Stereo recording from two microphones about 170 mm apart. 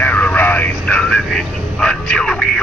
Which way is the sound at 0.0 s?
10° left (ahead or behind).